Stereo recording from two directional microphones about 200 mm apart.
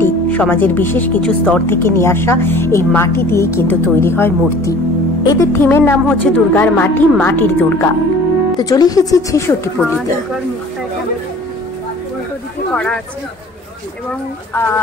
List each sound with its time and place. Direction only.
0.0 s speech: 10° left (ahead or behind)
12.7 s speech: 5° left (ahead or behind)
14.5 s speech: 10° left (ahead or behind)